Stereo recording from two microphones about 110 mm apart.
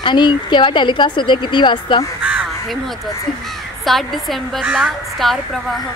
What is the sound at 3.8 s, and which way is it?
Speech, centre (ahead or behind).